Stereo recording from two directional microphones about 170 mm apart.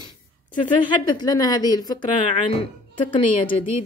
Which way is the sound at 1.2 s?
20° left (ahead or behind).